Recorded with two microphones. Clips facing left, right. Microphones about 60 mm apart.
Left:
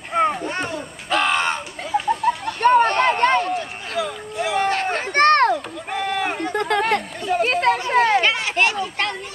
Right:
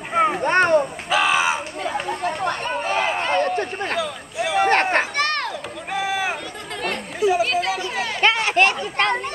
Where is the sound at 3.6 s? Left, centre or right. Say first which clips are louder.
Right 5 dB; right.